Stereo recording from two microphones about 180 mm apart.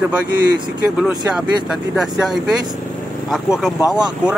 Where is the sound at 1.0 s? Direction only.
5° right (ahead or behind).